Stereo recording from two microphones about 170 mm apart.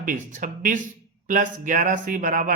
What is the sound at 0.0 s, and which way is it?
Speech, 50° right (ahead or behind).